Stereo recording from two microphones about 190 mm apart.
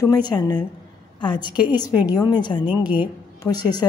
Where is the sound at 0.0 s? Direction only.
20° left (ahead or behind).